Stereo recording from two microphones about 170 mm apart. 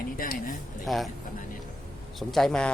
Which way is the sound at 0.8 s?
Centre (ahead or behind).